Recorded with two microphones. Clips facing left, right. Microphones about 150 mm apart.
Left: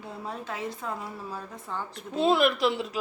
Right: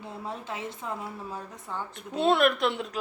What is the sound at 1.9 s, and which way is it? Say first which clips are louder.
A woman's voice: even; centre (ahead or behind).